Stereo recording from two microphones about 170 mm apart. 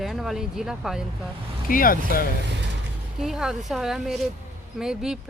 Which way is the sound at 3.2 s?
5° right (ahead or behind).